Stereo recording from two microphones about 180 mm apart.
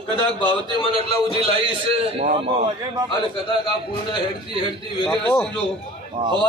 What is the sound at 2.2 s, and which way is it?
Speech, 35° right (ahead or behind).